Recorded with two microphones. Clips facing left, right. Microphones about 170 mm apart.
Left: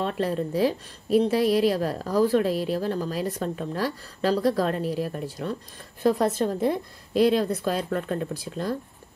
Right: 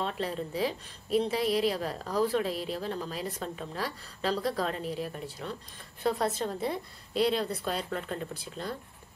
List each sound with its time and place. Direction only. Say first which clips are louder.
0.0 s a woman's voice: left 7 dB; 50° left (ahead or behind)